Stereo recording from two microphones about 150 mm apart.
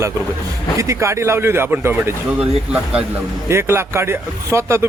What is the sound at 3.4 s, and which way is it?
Speech, 15° right (ahead or behind).